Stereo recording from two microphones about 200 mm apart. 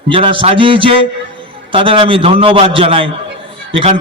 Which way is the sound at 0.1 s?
25° right (ahead or behind).